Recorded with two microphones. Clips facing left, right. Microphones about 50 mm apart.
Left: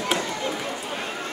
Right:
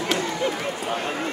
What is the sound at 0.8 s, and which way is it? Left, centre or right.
Speech, right.